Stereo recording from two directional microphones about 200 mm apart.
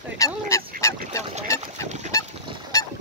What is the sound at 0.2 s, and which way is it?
Duck, 15° left (ahead or behind).